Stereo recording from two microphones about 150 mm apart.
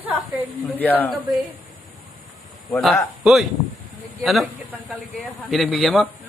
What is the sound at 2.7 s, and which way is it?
A man's voice, centre (ahead or behind).